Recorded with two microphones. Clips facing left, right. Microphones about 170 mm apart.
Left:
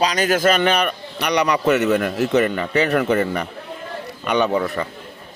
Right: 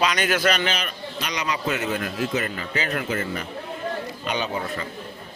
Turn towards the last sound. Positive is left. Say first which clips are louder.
# left 8 dB
turn(degrees=65)  # may be behind; listen again after turning